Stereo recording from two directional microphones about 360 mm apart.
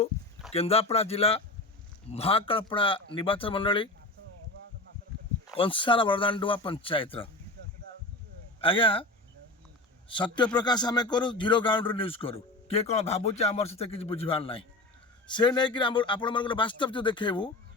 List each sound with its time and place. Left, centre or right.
0.5 s speech: centre
5.5 s speech: centre
8.6 s speech: centre
10.1 s speech: centre